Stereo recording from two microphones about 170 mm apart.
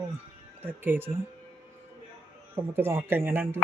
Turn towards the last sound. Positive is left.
turn(degrees=-15)  # may be behind; listen again after turning